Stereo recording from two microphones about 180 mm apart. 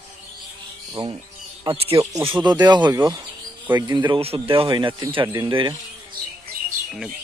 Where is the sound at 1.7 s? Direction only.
30° right (ahead or behind).